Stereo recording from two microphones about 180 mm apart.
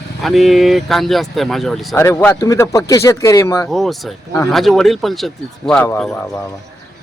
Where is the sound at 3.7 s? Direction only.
Centre (ahead or behind).